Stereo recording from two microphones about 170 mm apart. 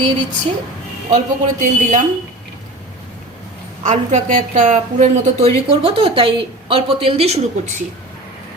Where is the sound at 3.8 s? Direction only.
45° right (ahead or behind).